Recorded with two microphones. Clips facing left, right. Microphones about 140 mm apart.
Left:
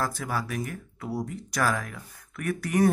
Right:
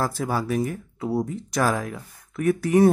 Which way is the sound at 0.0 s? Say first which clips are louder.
Right 5 dB; 30° right (ahead or behind).